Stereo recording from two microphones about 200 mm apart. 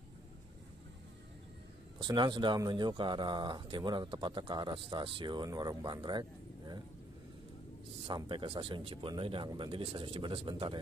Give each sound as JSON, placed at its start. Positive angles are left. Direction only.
{"t": 2.0, "sound": "speech", "side_deg": -20}
{"t": 8.1, "sound": "speech", "side_deg": -25}